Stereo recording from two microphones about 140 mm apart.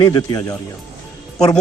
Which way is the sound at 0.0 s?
30° left (ahead or behind).